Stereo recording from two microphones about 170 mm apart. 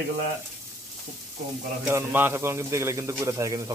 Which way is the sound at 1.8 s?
10° right (ahead or behind).